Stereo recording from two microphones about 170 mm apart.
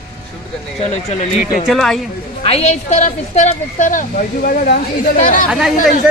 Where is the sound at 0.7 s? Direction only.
40° left (ahead or behind).